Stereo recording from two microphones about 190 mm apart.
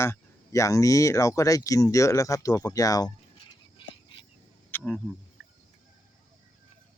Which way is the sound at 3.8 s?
25° left (ahead or behind).